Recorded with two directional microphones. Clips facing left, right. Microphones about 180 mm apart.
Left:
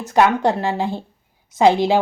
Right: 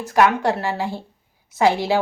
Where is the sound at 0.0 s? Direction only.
20° left (ahead or behind).